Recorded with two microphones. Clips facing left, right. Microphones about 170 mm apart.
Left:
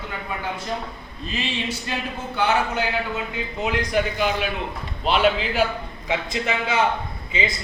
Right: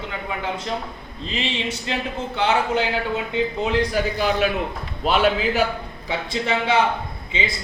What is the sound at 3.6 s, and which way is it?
A man's voice, 30° right (ahead or behind).